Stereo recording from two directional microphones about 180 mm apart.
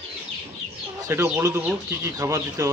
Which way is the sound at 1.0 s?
15° right (ahead or behind).